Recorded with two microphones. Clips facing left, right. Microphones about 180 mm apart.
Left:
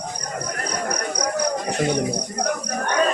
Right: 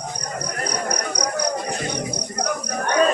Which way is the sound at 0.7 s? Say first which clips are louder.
Even; 50° left (ahead or behind).